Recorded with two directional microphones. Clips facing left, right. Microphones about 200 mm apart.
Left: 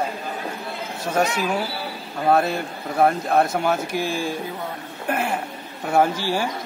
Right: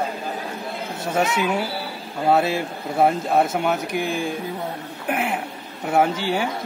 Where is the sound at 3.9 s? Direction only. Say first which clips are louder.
Right 1 dB; 60° right (ahead or behind).